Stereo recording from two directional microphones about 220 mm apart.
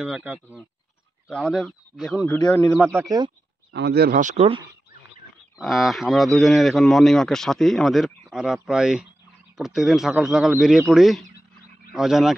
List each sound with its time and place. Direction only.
0.0 s speech: 5° right (ahead or behind)
2.9 s speech: 15° right (ahead or behind)
3.7 s speech: 50° right (ahead or behind); by 4.6 s 25° right (ahead or behind)
5.6 s speech: centre (ahead or behind)